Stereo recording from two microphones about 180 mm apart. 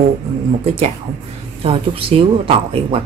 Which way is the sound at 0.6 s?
35° right (ahead or behind).